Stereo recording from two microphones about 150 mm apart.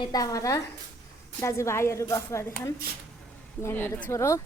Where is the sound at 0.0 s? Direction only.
25° left (ahead or behind).